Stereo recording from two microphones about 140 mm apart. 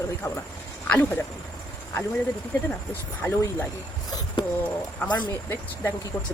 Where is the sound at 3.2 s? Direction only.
15° left (ahead or behind).